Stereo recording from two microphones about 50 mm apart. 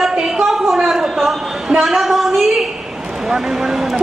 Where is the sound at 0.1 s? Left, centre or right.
Centre.